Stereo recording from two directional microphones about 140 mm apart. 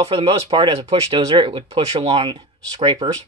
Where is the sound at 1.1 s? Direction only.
35° right (ahead or behind).